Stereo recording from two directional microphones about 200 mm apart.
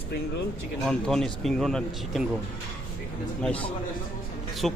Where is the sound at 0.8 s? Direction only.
Centre (ahead or behind).